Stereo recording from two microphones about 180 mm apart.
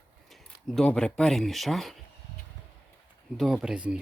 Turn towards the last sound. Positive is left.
turn(degrees=-5)  # may be behind; listen again after turning